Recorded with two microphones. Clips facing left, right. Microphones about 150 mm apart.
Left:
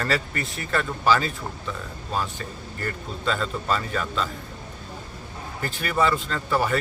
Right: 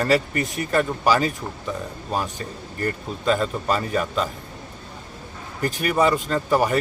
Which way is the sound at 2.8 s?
15° right (ahead or behind).